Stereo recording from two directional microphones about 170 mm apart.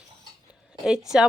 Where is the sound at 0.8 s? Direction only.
5° right (ahead or behind).